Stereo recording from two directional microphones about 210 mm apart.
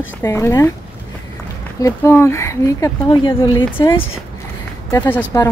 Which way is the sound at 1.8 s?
15° left (ahead or behind).